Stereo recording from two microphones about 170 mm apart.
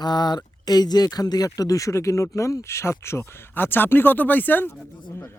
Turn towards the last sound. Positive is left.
turn(degrees=10)  # may be behind; listen again after turning